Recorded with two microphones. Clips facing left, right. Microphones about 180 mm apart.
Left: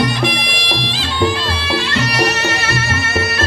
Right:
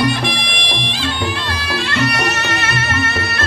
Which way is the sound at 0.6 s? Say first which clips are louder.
Left 2 dB; 55° right (ahead or behind).